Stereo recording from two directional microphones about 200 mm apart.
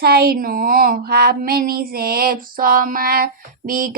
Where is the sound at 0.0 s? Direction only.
50° right (ahead or behind).